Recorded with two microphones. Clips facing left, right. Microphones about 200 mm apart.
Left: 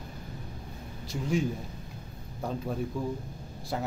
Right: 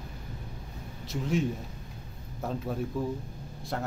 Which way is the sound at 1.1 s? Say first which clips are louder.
Even; centre (ahead or behind).